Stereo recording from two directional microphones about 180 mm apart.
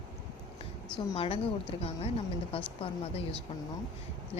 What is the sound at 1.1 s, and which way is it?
Speech, 30° left (ahead or behind).